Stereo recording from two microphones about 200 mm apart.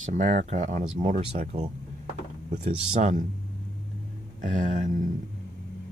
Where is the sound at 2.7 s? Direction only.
35° right (ahead or behind).